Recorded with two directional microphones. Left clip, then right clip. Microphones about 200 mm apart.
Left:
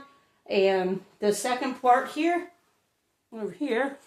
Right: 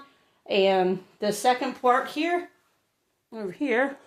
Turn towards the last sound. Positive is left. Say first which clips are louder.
# right 2 dB
turn(degrees=-45)  # may be behind; listen again after turning